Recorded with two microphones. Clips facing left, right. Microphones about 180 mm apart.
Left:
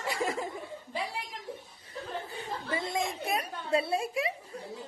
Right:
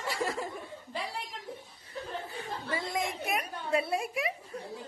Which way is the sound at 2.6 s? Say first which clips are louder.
Left 1 dB; 25° left (ahead or behind).